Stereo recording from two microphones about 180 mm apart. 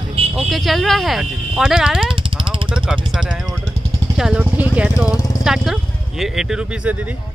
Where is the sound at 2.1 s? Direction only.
30° right (ahead or behind).